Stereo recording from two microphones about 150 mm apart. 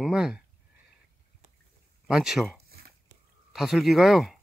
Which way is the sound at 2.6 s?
90° right.